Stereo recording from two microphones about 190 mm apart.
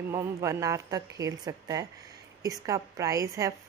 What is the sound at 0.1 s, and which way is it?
A woman's voice, 15° right (ahead or behind).